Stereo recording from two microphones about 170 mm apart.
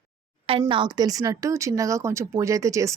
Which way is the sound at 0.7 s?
25° right (ahead or behind).